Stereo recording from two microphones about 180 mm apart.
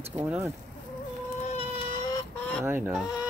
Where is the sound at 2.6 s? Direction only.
10° right (ahead or behind).